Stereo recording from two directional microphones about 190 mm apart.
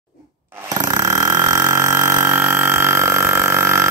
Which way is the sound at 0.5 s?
15° right (ahead or behind).